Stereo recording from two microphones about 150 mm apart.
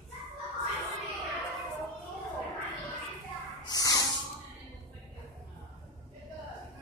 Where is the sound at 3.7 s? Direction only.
25° left (ahead or behind).